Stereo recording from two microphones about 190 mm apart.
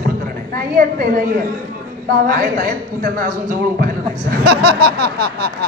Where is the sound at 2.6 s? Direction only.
45° right (ahead or behind).